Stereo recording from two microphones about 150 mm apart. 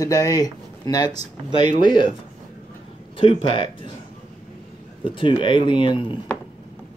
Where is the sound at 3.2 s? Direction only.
35° left (ahead or behind).